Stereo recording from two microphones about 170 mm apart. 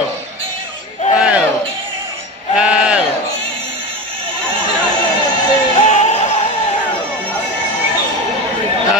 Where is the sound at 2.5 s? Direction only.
5° right (ahead or behind).